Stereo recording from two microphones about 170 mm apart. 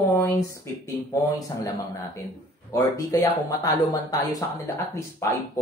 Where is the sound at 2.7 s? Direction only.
20° left (ahead or behind).